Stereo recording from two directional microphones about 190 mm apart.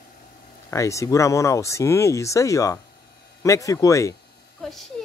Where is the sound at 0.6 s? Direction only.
15° left (ahead or behind).